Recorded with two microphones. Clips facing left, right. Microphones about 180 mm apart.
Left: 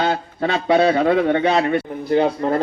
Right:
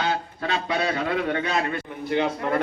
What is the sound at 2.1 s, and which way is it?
Speech, 35° left (ahead or behind).